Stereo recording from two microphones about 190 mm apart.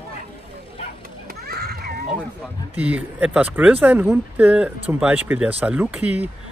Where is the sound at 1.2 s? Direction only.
55° right (ahead or behind).